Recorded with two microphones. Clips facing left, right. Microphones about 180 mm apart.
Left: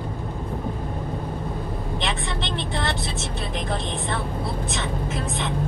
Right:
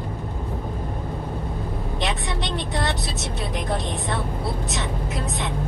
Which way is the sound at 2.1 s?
20° right (ahead or behind).